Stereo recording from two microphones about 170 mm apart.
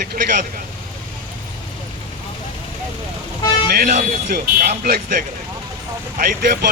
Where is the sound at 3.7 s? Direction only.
60° right (ahead or behind).